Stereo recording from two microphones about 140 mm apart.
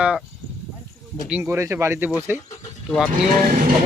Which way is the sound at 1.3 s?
15° right (ahead or behind).